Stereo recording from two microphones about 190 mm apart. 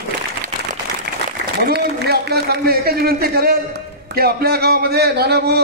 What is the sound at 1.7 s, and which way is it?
A man's voice, 55° right (ahead or behind).